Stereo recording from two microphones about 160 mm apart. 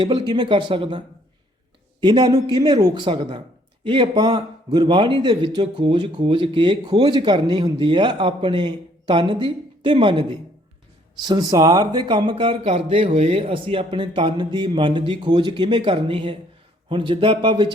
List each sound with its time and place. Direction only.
0.0 s speech: 30° right (ahead or behind)